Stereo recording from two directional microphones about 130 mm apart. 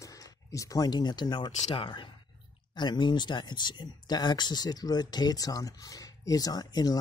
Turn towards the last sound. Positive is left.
turn(degrees=30)  # may be behind; listen again after turning